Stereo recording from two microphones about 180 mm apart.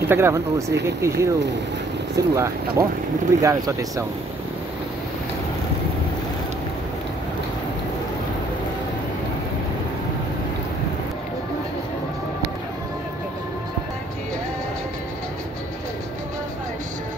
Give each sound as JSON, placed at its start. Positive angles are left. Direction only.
{"t": 0.1, "sound": "speech", "side_deg": -15}